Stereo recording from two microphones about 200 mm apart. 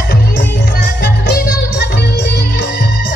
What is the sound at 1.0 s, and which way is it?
Music, 50° left (ahead or behind).